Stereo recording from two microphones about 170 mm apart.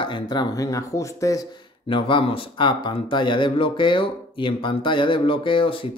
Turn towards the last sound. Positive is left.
turn(degrees=30)  # may be behind; listen again after turning